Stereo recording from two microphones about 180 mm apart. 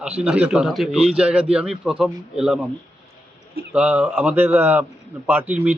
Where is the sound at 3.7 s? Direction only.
5° right (ahead or behind).